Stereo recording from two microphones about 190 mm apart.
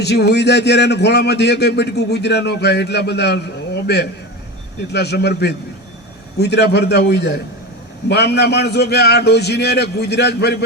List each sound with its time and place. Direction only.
0.0 s a man's voice: 60° left (ahead or behind)